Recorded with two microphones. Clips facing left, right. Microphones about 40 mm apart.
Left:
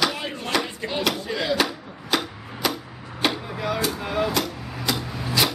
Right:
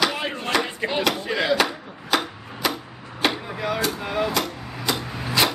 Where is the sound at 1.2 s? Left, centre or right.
Centre.